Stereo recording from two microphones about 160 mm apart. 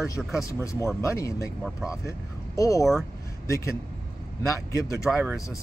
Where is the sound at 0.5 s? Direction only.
20° left (ahead or behind).